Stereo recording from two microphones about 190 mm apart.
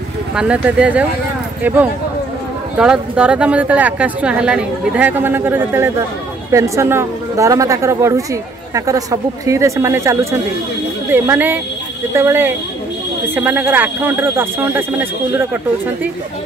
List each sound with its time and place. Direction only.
0.4 s speech: 5° right (ahead or behind)
2.8 s speech: 5° right (ahead or behind)